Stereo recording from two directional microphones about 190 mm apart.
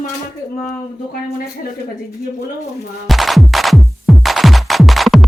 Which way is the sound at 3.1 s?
Centre (ahead or behind).